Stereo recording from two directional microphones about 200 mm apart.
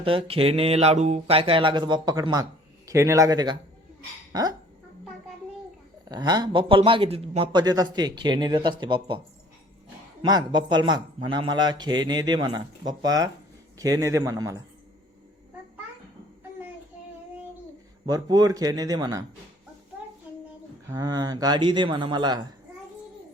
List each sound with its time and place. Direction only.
0.0 s speech: 25° right (ahead or behind)
6.1 s speech: 20° right (ahead or behind)
10.2 s a man's voice: 20° right (ahead or behind)
18.0 s speech: 20° right (ahead or behind)
20.8 s speech: 15° right (ahead or behind)